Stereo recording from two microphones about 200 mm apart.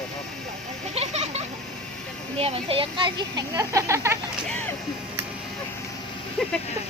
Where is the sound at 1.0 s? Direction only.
35° right (ahead or behind).